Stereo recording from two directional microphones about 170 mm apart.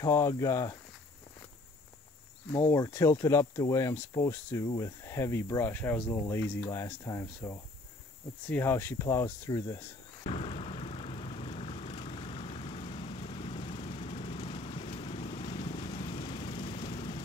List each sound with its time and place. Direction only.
0.0 s speech: 20° left (ahead or behind)
2.7 s speech: 15° left (ahead or behind)
10.2 s vehicle: 35° left (ahead or behind)